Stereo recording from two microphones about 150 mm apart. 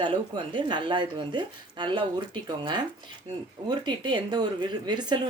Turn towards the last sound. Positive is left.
turn(degrees=-30)  # may be behind; listen again after turning